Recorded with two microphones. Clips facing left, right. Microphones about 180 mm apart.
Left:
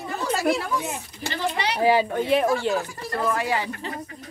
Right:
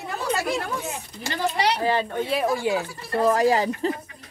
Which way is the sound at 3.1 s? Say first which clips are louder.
Right 6 dB; 35° right (ahead or behind).